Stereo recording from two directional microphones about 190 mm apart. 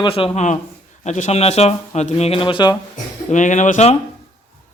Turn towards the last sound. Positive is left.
turn(degrees=35)  # may be behind; listen again after turning